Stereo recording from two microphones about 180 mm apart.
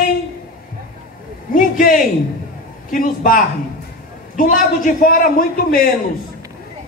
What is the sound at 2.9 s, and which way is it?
A man's voice, 50° left (ahead or behind).